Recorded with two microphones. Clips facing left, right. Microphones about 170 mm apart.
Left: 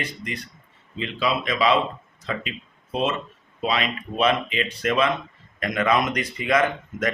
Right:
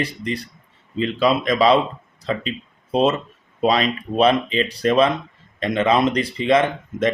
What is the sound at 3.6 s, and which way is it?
Speech, 40° right (ahead or behind).